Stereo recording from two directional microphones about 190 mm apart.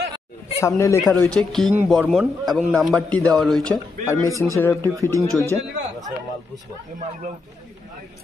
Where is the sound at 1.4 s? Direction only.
Centre (ahead or behind).